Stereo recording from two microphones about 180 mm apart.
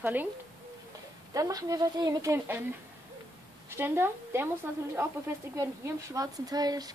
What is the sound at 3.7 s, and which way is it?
Speech, 15° right (ahead or behind).